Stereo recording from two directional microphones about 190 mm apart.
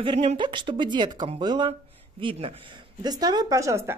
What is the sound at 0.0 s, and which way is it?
Speech, 25° right (ahead or behind).